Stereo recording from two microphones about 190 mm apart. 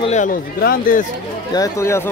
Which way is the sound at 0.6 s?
50° left (ahead or behind).